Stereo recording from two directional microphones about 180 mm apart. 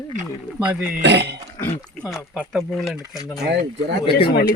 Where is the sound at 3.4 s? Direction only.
75° right (ahead or behind).